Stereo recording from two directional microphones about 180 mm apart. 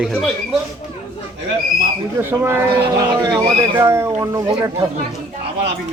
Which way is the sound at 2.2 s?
15° right (ahead or behind).